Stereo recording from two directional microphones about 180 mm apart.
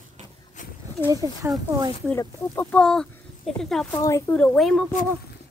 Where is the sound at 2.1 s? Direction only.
10° left (ahead or behind).